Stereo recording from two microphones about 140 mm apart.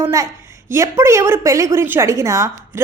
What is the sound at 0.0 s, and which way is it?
A woman's voice, 25° right (ahead or behind).